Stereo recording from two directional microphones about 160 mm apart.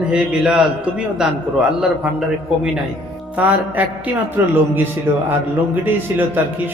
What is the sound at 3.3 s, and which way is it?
Music, 10° right (ahead or behind).